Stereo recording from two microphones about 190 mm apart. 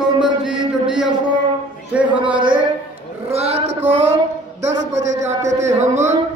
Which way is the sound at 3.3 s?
35° right (ahead or behind).